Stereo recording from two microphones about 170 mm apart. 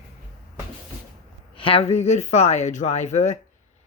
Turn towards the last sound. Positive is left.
turn(degrees=45)  # may be behind; listen again after turning